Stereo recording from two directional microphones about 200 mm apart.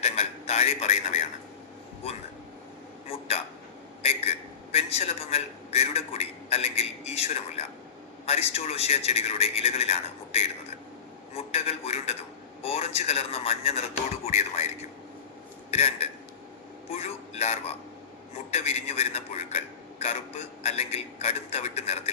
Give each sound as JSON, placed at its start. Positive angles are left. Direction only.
{"t": 0.0, "sound": "radio", "side_deg": 30}
{"t": 3.1, "sound": "speech", "side_deg": 30}
{"t": 4.7, "sound": "speech", "side_deg": 30}
{"t": 15.7, "sound": "speech", "side_deg": 30}